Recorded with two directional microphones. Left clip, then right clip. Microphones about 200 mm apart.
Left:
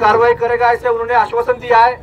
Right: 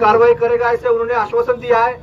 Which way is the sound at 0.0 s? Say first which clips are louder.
Even; 25° right (ahead or behind).